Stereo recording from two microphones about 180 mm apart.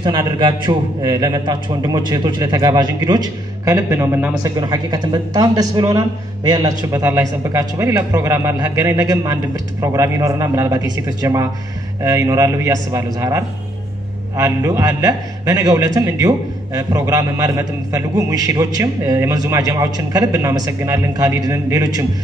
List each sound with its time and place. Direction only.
0.0 s a man's voice: 25° right (ahead or behind)